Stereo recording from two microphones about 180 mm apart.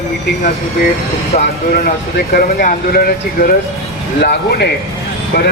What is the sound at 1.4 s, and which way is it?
Speech, 50° left (ahead or behind).